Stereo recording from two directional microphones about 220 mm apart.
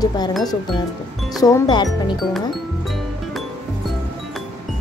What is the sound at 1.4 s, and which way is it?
Speech, 15° left (ahead or behind).